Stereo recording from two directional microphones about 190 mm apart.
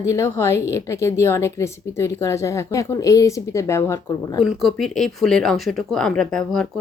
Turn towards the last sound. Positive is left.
turn(degrees=5)  # may be behind; listen again after turning